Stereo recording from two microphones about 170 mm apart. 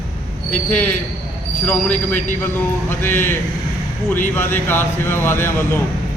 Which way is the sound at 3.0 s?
15° left (ahead or behind).